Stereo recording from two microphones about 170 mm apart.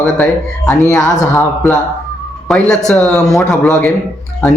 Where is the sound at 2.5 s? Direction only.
5° left (ahead or behind).